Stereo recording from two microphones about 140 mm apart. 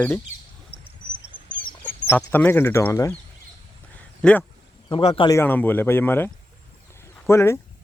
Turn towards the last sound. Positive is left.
turn(degrees=20)  # may be behind; listen again after turning